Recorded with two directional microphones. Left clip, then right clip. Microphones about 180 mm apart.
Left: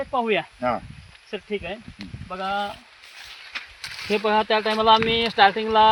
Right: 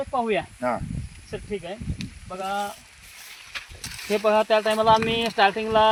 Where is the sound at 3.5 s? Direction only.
5° left (ahead or behind).